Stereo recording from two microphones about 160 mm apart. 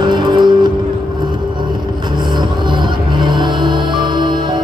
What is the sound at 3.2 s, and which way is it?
Music, 30° right (ahead or behind).